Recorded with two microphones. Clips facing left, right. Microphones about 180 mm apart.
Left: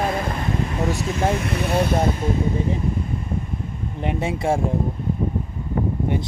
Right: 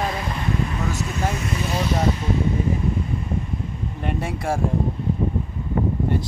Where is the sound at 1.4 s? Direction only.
60° left (ahead or behind).